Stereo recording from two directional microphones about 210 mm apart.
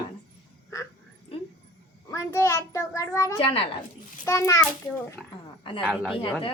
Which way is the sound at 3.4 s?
25° left (ahead or behind).